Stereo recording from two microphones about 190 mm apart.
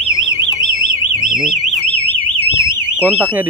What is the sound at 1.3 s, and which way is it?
Alarm, centre (ahead or behind).